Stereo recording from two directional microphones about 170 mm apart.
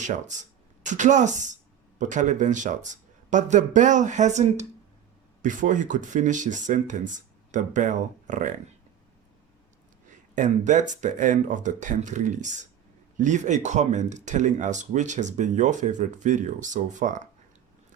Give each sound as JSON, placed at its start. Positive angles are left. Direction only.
{"t": 0.0, "sound": "speech", "side_deg": -45}
{"t": 10.3, "sound": "speech", "side_deg": -50}